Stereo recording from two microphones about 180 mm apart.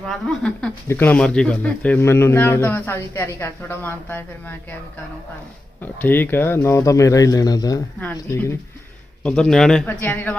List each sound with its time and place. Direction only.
0.1 s speech: 5° left (ahead or behind)
5.8 s speech: 10° left (ahead or behind)